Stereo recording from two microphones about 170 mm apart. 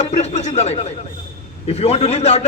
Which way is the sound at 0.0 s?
40° left (ahead or behind).